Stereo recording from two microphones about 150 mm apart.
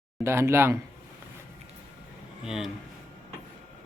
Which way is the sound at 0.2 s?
15° right (ahead or behind).